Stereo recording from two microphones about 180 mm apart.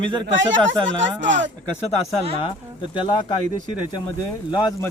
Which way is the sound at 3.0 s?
25° left (ahead or behind).